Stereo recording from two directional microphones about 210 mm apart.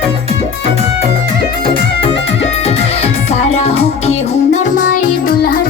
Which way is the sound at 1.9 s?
25° left (ahead or behind).